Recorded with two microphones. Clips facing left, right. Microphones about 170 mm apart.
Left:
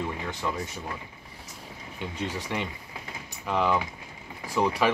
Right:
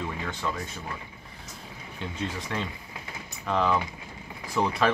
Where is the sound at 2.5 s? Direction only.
15° left (ahead or behind).